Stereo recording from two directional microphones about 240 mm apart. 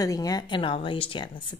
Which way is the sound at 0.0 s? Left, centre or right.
Centre.